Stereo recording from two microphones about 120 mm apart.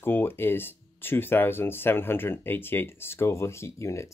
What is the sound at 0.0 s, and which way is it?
Speech, 20° left (ahead or behind).